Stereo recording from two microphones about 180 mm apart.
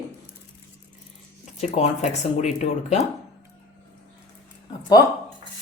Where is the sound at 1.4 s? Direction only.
40° left (ahead or behind).